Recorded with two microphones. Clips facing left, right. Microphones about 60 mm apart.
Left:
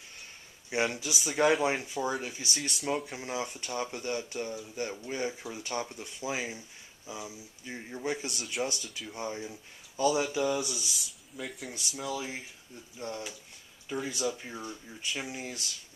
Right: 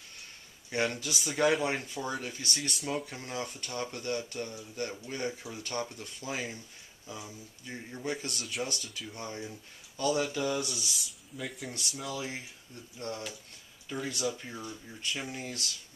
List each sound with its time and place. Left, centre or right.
0.7 s speech: centre
1.3 s speech: centre
3.2 s speech: centre